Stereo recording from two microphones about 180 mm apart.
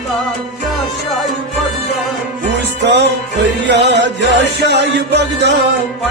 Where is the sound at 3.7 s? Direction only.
75° right (ahead or behind).